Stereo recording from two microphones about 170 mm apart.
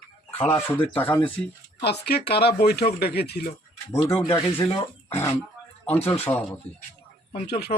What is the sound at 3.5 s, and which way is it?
Speech, 35° left (ahead or behind).